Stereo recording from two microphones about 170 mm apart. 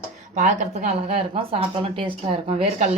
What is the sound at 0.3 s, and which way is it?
A woman's voice, 45° right (ahead or behind).